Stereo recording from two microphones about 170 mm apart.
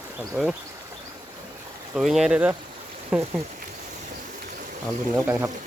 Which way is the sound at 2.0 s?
Centre (ahead or behind).